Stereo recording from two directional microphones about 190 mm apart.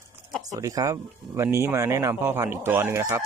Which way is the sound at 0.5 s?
20° right (ahead or behind).